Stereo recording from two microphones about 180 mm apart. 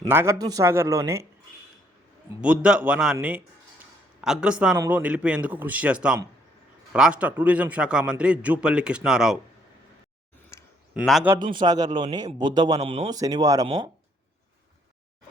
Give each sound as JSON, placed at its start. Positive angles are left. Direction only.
{"t": 0.1, "sound": "a man's voice", "side_deg": -15}
{"t": 2.4, "sound": "a man's voice", "side_deg": -5}
{"t": 10.9, "sound": "a man's voice", "side_deg": -5}
{"t": 11.5, "sound": "speech", "side_deg": -20}
{"t": 12.8, "sound": "a man's voice", "side_deg": -35}
{"t": 13.1, "sound": "speech", "side_deg": -20}